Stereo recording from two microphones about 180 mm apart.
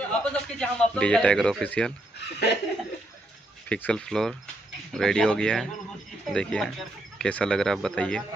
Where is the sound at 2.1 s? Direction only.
65° left (ahead or behind).